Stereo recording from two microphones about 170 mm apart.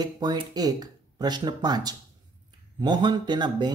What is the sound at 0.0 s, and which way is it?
Speech, 25° right (ahead or behind).